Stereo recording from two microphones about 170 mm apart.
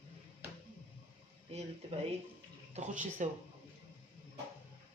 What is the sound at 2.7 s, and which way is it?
Speech, 45° right (ahead or behind).